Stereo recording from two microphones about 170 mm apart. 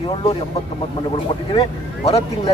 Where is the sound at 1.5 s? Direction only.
35° left (ahead or behind).